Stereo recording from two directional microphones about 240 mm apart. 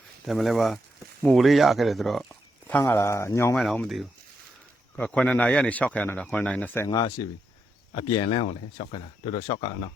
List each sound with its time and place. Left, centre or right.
0.3 s speech: centre
8.2 s speech: left